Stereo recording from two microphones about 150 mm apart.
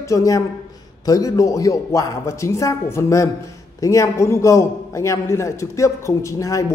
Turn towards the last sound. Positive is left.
turn(degrees=20)  # may be behind; listen again after turning